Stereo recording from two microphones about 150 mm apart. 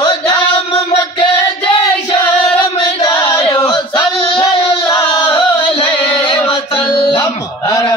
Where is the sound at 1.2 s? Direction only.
35° left (ahead or behind).